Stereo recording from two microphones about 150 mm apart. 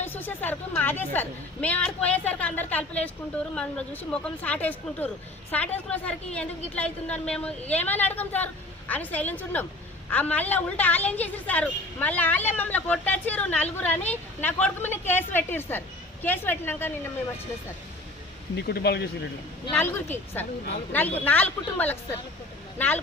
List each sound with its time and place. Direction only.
0.0 s a woman's voice: 15° left (ahead or behind)
18.5 s speech: 90° left
19.7 s a woman's voice: 15° left (ahead or behind)